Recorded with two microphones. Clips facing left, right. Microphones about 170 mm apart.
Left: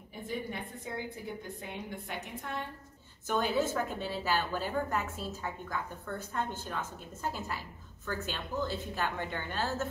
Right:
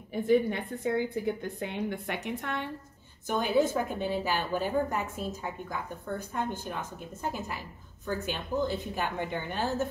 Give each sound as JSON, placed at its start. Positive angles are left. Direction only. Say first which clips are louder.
{"t": 0.3, "sound": "a woman's voice", "louder": "right 13 dB", "side_deg": -75}
{"t": 3.3, "sound": "a woman's voice", "louder": "right 4 dB", "side_deg": -15}